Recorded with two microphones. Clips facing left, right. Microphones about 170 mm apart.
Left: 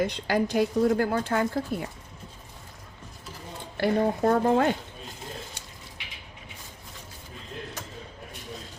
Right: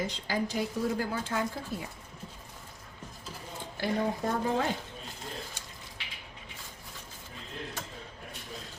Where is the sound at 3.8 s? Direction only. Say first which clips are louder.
Left 7 dB; 60° left (ahead or behind).